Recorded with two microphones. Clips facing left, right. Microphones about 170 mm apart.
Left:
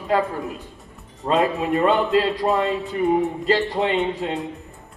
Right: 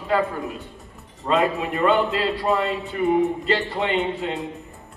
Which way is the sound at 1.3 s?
Centre (ahead or behind).